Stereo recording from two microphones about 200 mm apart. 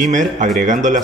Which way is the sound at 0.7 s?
40° right (ahead or behind).